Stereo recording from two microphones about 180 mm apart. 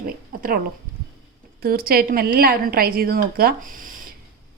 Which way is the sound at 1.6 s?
55° right (ahead or behind).